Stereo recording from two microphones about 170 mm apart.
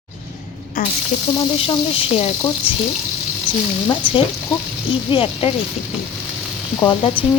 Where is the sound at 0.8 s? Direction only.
55° left (ahead or behind).